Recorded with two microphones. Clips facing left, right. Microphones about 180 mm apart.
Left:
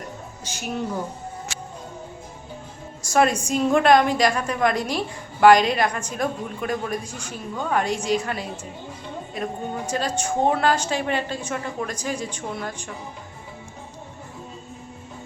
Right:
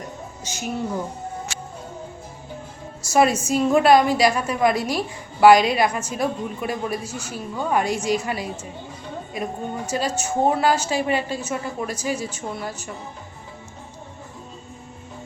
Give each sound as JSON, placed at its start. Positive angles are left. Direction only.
{"t": 3.1, "sound": "a woman's voice", "side_deg": -5}